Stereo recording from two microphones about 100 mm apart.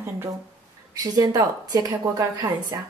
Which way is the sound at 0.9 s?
40° right (ahead or behind).